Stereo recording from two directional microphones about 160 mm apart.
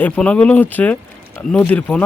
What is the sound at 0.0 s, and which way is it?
Speech, 5° left (ahead or behind).